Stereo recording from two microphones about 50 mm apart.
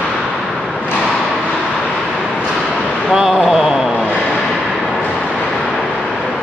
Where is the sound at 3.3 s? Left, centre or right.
Centre.